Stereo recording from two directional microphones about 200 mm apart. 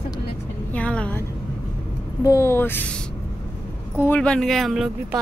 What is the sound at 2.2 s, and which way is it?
Speech, 15° left (ahead or behind).